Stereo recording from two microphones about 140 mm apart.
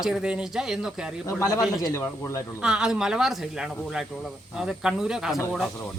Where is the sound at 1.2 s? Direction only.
25° left (ahead or behind).